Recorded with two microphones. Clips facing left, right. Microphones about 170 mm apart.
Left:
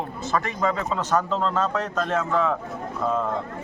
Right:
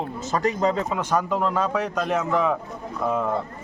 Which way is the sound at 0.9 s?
10° right (ahead or behind).